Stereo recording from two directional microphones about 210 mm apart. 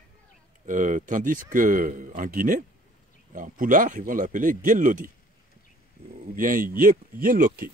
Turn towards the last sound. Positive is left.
turn(degrees=-40)  # may be behind; listen again after turning